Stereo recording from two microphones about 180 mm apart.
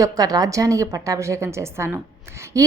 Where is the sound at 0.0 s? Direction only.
20° right (ahead or behind).